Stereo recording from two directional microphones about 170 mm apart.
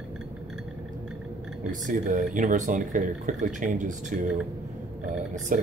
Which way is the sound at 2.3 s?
50° right (ahead or behind).